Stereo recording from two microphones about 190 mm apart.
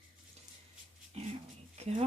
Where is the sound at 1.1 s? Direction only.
35° right (ahead or behind).